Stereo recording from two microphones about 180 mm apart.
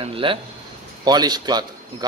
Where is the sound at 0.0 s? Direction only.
30° right (ahead or behind).